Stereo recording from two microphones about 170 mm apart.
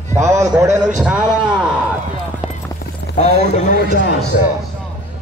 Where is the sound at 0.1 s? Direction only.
15° right (ahead or behind).